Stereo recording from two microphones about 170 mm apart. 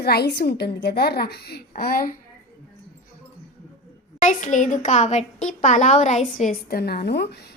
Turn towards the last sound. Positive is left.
turn(degrees=70)  # may be behind; listen again after turning